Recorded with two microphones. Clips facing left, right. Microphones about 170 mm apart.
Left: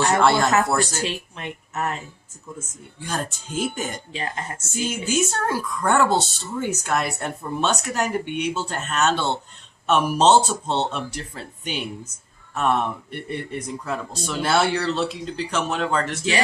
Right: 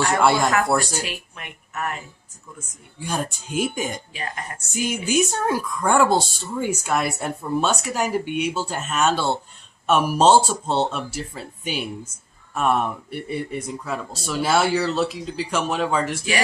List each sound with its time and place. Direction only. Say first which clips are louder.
0.2 s a woman's voice: even; 10° right (ahead or behind)
1.0 s a woman's voice: left 5 dB; 25° left (ahead or behind)
3.0 s a woman's voice: right 2 dB; 10° right (ahead or behind)
4.1 s a woman's voice: left 2 dB; 25° left (ahead or behind)
4.7 s a woman's voice: right 2 dB; 15° right (ahead or behind)